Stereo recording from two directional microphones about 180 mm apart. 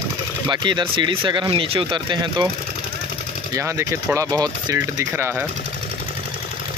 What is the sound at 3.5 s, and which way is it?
Speech, 15° right (ahead or behind).